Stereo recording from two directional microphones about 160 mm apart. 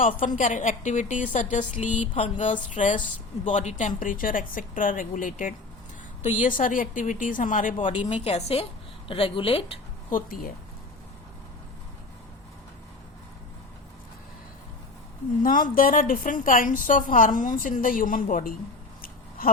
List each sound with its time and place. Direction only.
0.0 s a woman's voice: 55° left (ahead or behind)
2.1 s speech: 35° left (ahead or behind)
2.5 s a woman's voice: 50° left (ahead or behind)
7.8 s speech: 30° left (ahead or behind)
8.1 s speech: 40° left (ahead or behind)
10.1 s a woman's voice: 60° left (ahead or behind)
15.4 s a woman's voice: 60° left (ahead or behind)